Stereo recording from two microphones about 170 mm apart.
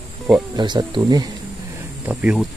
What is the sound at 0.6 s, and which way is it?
Speech, 25° right (ahead or behind).